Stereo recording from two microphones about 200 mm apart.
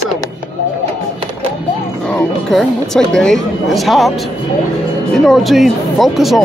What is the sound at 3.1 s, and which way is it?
Speech, centre (ahead or behind).